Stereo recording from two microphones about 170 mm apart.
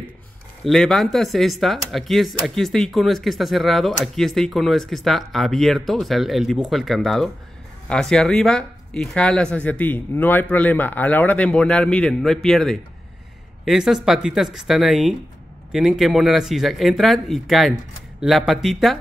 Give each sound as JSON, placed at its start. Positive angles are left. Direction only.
{"t": 0.7, "sound": "speech", "side_deg": 0}